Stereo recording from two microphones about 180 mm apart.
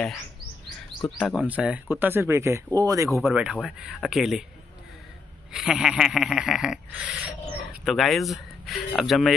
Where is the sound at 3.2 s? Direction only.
5° right (ahead or behind).